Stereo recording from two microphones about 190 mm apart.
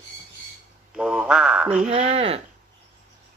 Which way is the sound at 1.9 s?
30° right (ahead or behind).